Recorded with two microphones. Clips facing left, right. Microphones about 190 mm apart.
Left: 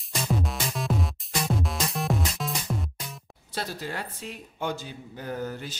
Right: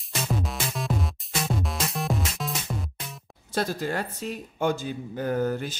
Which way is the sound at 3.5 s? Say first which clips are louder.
Right 6 dB; 45° right (ahead or behind).